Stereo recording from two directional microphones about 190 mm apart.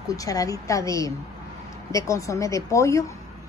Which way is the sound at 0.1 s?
20° left (ahead or behind).